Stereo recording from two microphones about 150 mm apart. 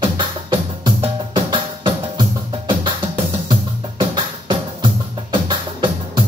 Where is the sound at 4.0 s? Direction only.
35° right (ahead or behind).